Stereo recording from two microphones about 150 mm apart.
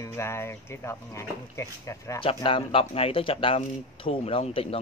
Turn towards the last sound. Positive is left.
turn(degrees=40)  # may be behind; listen again after turning